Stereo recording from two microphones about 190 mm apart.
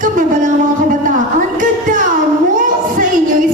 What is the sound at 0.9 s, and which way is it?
Music, 45° right (ahead or behind).